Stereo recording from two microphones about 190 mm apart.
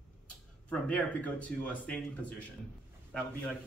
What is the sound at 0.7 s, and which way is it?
A man's voice, 5° left (ahead or behind).